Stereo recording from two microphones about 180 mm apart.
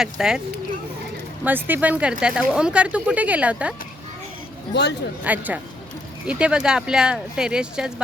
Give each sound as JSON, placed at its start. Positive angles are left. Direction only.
{"t": 0.0, "sound": "speech", "side_deg": -5}
{"t": 1.5, "sound": "speech", "side_deg": -10}
{"t": 4.7, "sound": "speech", "side_deg": 70}
{"t": 5.2, "sound": "speech", "side_deg": -10}